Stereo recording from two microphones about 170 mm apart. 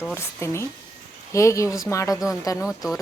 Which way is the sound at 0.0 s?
15° left (ahead or behind).